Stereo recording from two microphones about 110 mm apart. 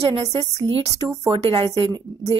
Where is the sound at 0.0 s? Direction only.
60° right (ahead or behind).